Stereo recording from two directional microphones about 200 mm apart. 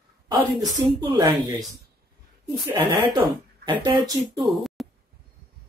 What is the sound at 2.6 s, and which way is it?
Speech, 10° right (ahead or behind).